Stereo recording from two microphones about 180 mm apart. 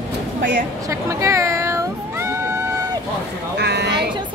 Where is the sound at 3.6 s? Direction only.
70° right (ahead or behind).